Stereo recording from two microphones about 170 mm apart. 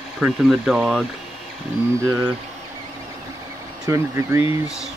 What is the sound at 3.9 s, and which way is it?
Speech, 15° right (ahead or behind).